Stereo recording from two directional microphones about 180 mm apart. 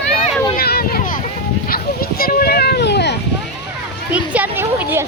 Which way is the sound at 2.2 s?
55° left (ahead or behind).